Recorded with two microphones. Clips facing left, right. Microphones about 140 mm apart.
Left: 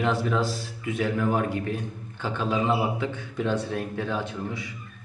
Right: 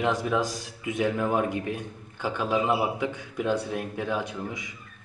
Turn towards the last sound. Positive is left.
turn(degrees=-15)  # may be behind; listen again after turning